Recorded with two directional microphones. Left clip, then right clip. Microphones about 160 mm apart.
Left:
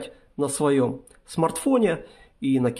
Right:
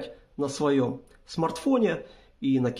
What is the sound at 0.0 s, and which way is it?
Speech, 25° left (ahead or behind).